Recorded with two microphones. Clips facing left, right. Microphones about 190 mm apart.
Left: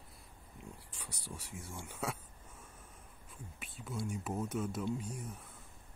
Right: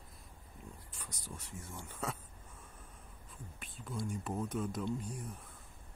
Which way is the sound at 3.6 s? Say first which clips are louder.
Even; 5° left (ahead or behind).